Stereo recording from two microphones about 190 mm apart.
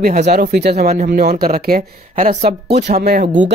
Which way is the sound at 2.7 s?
40° right (ahead or behind).